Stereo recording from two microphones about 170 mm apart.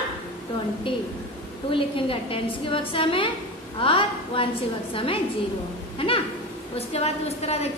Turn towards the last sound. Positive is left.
turn(degrees=40)  # may be behind; listen again after turning